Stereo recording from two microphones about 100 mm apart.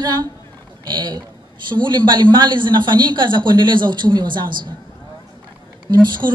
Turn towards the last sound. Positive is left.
turn(degrees=-50)  # may be behind; listen again after turning